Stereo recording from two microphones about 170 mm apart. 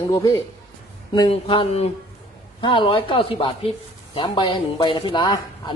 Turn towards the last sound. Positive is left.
turn(degrees=25)  # may be behind; listen again after turning